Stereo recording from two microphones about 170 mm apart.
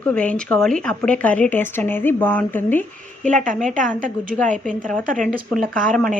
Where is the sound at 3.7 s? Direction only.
50° right (ahead or behind).